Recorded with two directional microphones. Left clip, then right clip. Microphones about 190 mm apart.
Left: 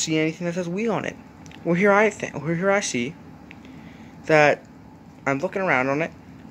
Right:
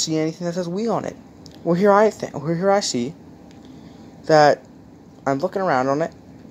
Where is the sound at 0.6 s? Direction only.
5° left (ahead or behind).